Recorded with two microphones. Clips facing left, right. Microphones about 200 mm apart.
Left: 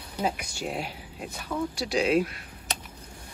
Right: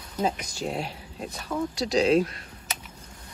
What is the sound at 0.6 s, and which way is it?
Speech, 30° right (ahead or behind).